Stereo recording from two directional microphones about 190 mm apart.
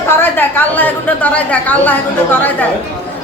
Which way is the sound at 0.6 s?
10° left (ahead or behind).